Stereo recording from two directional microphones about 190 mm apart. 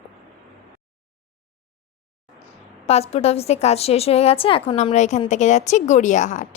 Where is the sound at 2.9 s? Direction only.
35° left (ahead or behind).